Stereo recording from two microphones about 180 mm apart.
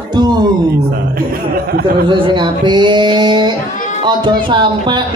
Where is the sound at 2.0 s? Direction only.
25° right (ahead or behind).